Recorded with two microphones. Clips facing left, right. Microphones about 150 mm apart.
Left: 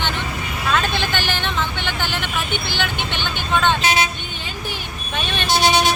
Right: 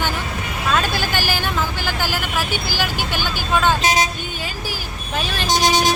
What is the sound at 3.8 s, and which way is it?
Speech, 40° right (ahead or behind).